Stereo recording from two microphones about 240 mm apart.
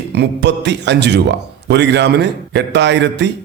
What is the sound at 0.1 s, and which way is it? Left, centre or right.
A man's voice, right.